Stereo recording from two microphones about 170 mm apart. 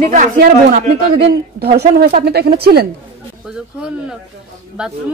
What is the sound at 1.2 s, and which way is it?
A woman's voice, 70° right (ahead or behind).